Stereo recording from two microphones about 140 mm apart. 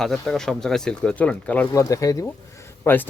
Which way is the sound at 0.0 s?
5° left (ahead or behind).